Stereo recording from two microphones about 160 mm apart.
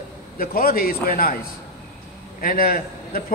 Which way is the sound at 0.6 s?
65° left (ahead or behind).